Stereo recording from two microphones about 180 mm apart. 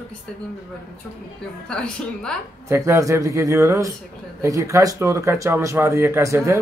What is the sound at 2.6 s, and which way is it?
Speech, 15° right (ahead or behind).